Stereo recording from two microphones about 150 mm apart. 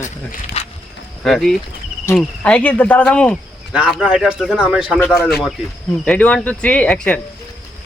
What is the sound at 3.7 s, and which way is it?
Speech, 5° right (ahead or behind).